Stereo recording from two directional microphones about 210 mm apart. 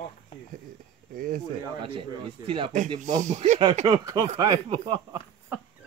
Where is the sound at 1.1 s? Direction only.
40° right (ahead or behind).